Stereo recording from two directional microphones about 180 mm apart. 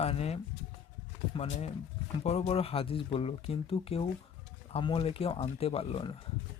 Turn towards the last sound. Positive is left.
turn(degrees=30)  # may be behind; listen again after turning